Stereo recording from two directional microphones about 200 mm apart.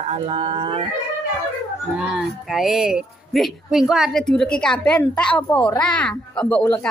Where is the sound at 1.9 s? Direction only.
Centre (ahead or behind).